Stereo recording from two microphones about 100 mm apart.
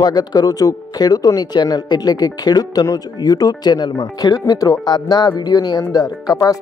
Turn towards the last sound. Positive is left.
turn(degrees=35)  # may be behind; listen again after turning